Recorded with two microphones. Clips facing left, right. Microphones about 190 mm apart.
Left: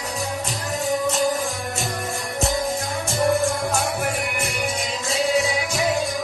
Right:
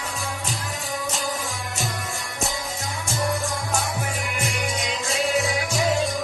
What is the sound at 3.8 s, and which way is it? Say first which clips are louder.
Music: left 4 dB; 60° left (ahead or behind).